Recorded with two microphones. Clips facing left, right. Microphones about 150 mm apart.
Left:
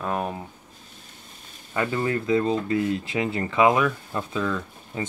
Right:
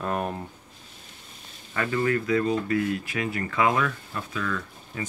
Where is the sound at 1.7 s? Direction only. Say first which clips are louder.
Even; 25° left (ahead or behind).